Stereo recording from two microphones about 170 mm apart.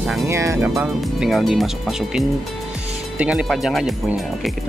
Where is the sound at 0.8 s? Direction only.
Centre (ahead or behind).